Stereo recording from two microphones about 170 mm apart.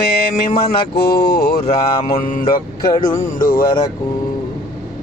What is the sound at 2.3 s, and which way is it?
Speech, 55° left (ahead or behind).